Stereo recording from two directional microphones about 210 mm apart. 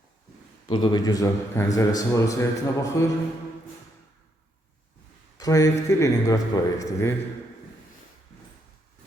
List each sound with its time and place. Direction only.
0.7 s a man's voice: 20° left (ahead or behind)
5.4 s a man's voice: 15° left (ahead or behind)